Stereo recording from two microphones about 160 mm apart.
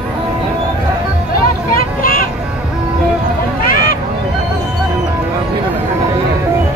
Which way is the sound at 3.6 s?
60° left (ahead or behind).